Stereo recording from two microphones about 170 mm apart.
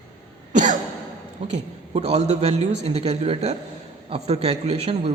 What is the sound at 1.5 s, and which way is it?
A man's voice, 40° right (ahead or behind).